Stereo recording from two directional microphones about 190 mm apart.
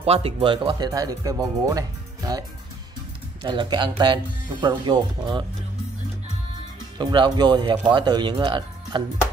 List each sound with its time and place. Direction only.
0.0 s speech: 30° right (ahead or behind)
3.4 s speech: 25° right (ahead or behind)
7.0 s speech: 25° right (ahead or behind)